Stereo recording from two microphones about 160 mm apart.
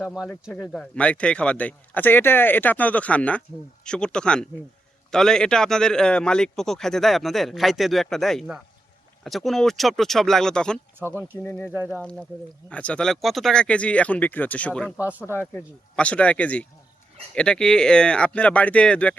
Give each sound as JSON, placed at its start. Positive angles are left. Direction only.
{"t": 0.0, "sound": "speech", "side_deg": 0}
{"t": 11.6, "sound": "speech", "side_deg": -10}
{"t": 11.9, "sound": "speech", "side_deg": 5}
{"t": 14.9, "sound": "speech", "side_deg": -10}
{"t": 15.3, "sound": "speech", "side_deg": 10}